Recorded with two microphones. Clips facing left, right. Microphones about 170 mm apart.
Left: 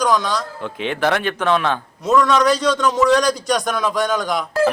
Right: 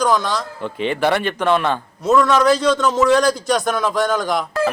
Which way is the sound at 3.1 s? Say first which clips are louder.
Right 1 dB; 5° right (ahead or behind).